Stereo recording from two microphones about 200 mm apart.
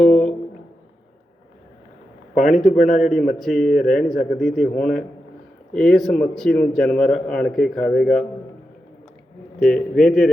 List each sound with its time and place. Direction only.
0.0 s a sound: 5° left (ahead or behind)
2.3 s a man's voice: 40° left (ahead or behind)
3.0 s a man's voice: centre (ahead or behind)
9.6 s a man's voice: 5° left (ahead or behind)